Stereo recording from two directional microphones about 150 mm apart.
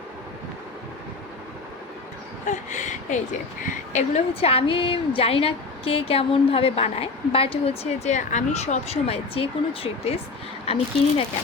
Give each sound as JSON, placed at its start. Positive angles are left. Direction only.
{"t": 2.5, "sound": "a woman's voice", "side_deg": 55}